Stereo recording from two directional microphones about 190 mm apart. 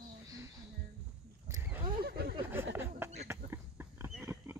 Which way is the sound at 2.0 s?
55° right (ahead or behind).